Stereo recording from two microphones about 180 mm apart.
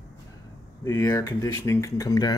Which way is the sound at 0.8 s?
20° left (ahead or behind).